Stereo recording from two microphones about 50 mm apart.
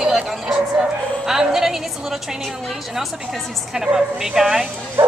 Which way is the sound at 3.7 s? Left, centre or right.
Centre.